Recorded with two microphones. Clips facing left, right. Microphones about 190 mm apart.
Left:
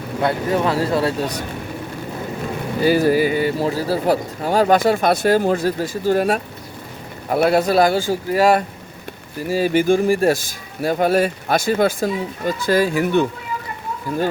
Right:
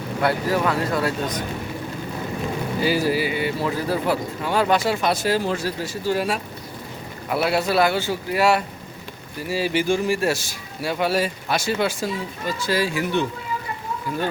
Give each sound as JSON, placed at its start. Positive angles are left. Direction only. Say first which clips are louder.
{"t": 0.2, "sound": "speech", "louder": "left 2 dB", "side_deg": 25}
{"t": 2.8, "sound": "speech", "louder": "left 7 dB", "side_deg": 50}